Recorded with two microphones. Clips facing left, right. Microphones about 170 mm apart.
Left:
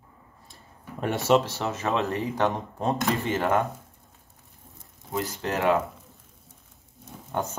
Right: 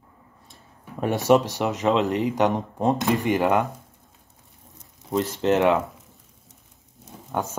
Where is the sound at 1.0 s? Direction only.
15° right (ahead or behind).